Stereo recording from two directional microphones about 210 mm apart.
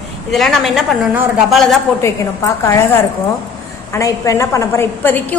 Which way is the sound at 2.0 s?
15° left (ahead or behind).